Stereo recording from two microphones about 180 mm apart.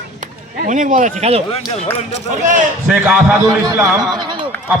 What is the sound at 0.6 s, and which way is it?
Speech, 45° right (ahead or behind).